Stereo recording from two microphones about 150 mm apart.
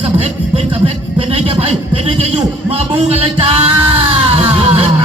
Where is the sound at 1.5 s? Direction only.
45° right (ahead or behind).